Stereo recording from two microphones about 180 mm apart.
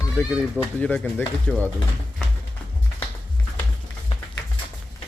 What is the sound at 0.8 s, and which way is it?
Speech, 10° left (ahead or behind).